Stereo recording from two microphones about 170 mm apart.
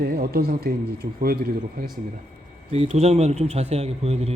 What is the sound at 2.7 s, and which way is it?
Speech, 40° right (ahead or behind).